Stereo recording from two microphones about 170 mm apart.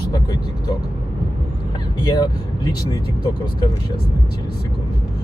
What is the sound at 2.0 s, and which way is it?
Speech, 25° left (ahead or behind).